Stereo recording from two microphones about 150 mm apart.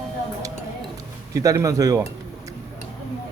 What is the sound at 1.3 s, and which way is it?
Speech, 20° right (ahead or behind).